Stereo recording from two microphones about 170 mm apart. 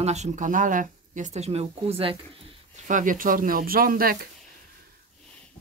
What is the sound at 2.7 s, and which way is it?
Speech, 50° right (ahead or behind).